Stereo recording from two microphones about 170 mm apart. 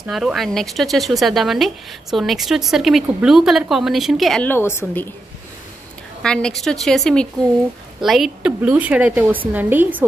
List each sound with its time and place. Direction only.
0.0 s speech: centre (ahead or behind); by 5.0 s 15° left (ahead or behind)
6.2 s a woman's voice: 5° left (ahead or behind)